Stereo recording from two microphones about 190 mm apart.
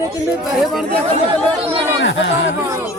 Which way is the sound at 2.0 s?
75° left (ahead or behind).